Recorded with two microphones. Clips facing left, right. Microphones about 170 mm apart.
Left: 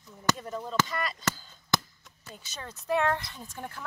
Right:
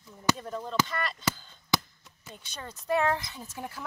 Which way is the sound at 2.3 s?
5° left (ahead or behind).